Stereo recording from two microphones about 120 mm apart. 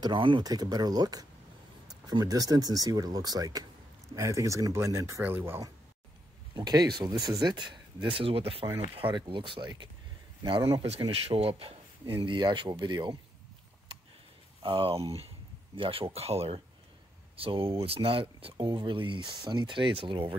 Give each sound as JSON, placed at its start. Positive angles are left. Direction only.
{"t": 0.0, "sound": "speech", "side_deg": -40}
{"t": 6.5, "sound": "speech", "side_deg": -35}
{"t": 10.8, "sound": "speech", "side_deg": -50}
{"t": 14.6, "sound": "speech", "side_deg": -50}